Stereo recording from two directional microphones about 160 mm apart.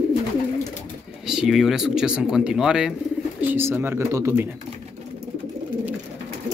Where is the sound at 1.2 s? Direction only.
5° right (ahead or behind).